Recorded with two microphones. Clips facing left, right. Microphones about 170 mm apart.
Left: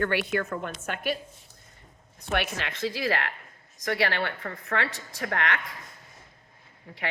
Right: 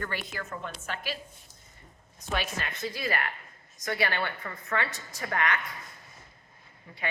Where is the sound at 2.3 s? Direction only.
75° left (ahead or behind).